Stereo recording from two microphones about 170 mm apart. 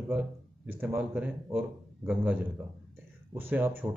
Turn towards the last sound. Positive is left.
turn(degrees=-10)  # may be behind; listen again after turning